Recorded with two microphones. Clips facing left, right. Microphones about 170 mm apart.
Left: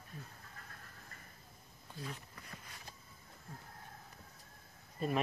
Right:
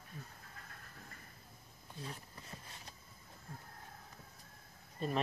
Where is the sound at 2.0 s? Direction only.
25° right (ahead or behind).